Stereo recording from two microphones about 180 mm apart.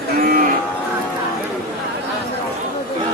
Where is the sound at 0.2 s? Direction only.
55° right (ahead or behind).